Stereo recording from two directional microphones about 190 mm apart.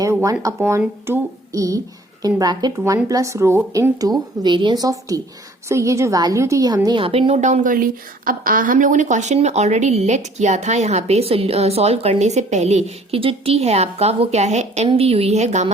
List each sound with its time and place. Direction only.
0.0 s a woman's voice: 15° right (ahead or behind); by 15.7 s 35° right (ahead or behind)